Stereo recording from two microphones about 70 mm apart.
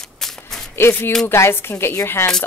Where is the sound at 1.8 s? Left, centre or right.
Left.